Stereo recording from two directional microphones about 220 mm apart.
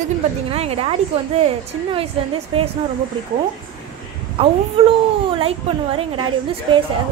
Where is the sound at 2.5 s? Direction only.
25° right (ahead or behind).